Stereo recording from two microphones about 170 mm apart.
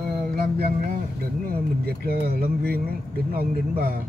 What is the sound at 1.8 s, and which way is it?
Speech, 65° right (ahead or behind).